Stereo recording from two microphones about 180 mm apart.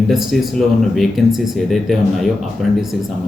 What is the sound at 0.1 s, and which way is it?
Speech, centre (ahead or behind).